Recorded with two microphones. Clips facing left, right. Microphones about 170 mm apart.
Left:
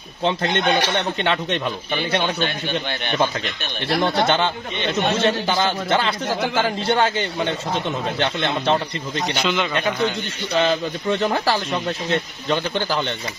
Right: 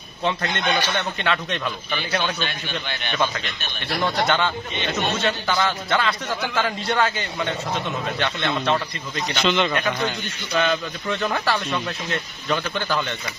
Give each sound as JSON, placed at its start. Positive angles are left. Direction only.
{"t": 0.2, "sound": "a man's voice", "side_deg": 25}
{"t": 9.3, "sound": "speech", "side_deg": 10}
{"t": 10.5, "sound": "a man's voice", "side_deg": 30}